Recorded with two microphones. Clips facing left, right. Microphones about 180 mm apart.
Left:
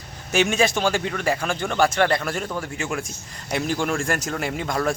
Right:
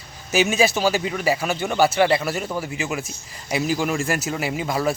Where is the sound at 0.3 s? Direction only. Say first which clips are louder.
Right 1 dB; 5° right (ahead or behind).